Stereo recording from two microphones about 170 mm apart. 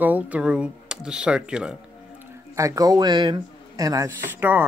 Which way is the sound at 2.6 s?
20° right (ahead or behind).